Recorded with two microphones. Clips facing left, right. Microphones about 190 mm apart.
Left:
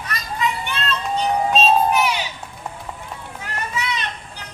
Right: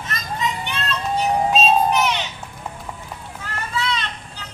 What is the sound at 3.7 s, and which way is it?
Children playing, 15° left (ahead or behind).